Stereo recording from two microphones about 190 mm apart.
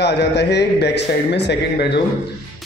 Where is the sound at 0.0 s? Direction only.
65° left (ahead or behind).